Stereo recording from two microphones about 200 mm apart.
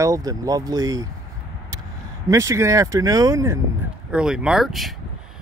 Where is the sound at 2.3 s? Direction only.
15° right (ahead or behind).